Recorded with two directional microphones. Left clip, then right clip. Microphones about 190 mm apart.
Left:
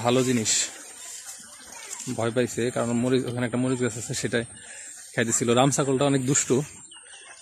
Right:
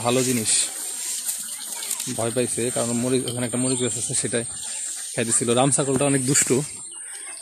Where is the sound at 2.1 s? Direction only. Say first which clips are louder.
Even; 10° left (ahead or behind).